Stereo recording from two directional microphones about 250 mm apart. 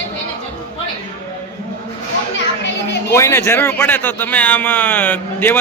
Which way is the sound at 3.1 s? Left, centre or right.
Centre.